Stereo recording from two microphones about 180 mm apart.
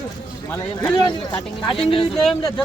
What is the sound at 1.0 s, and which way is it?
Speech, 25° left (ahead or behind).